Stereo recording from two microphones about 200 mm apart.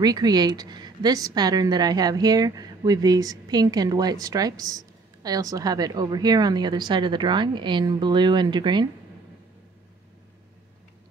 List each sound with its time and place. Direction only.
0.0 s a woman's voice: 20° right (ahead or behind)